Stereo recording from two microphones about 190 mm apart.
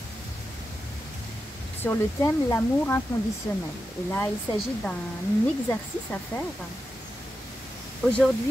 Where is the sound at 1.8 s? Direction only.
15° left (ahead or behind).